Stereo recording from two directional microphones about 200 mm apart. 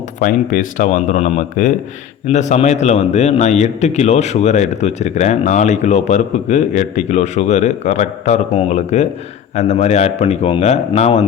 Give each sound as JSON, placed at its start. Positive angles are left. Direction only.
{"t": 0.2, "sound": "a man's voice", "side_deg": 40}